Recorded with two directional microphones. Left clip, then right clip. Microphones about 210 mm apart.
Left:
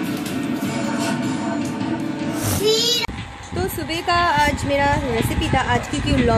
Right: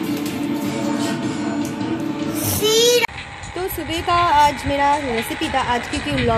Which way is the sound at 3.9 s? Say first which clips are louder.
Right 2 dB; centre (ahead or behind).